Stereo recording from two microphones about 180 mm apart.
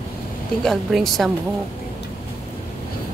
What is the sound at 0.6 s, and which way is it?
Speech, centre (ahead or behind).